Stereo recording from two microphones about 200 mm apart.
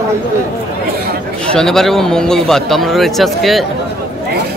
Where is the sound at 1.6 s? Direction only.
Centre (ahead or behind).